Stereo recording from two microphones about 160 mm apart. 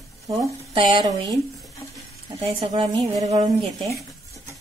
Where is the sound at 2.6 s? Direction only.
30° right (ahead or behind).